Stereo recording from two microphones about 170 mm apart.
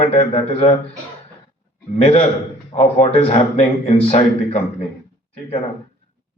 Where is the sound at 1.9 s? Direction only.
40° left (ahead or behind).